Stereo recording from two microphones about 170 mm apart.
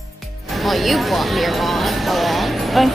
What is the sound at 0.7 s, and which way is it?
Speech, centre (ahead or behind).